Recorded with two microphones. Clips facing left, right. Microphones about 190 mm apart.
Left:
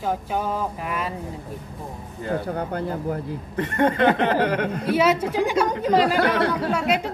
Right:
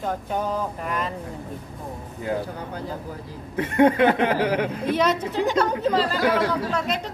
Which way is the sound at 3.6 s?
10° right (ahead or behind).